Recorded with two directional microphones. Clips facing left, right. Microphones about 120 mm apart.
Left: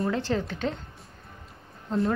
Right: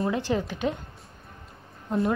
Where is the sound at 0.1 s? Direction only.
15° right (ahead or behind).